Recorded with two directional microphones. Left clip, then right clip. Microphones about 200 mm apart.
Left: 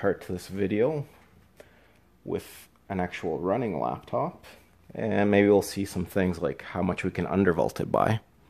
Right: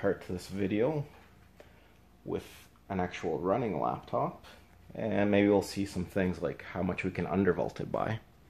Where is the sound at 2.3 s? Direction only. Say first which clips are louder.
Left 4 dB; 50° left (ahead or behind).